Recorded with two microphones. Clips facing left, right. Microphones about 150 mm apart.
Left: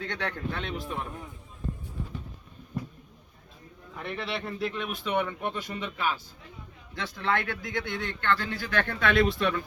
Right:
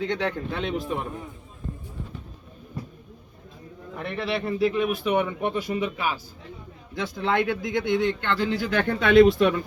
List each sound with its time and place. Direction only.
0.0 s speech: 15° right (ahead or behind)
3.9 s speech: centre (ahead or behind)